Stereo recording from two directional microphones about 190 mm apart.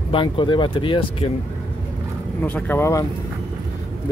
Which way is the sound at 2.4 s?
10° left (ahead or behind).